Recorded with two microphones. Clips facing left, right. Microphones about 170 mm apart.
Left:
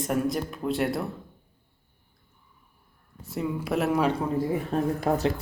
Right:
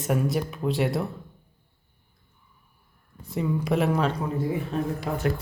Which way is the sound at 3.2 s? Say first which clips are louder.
Right 3 dB; 5° left (ahead or behind).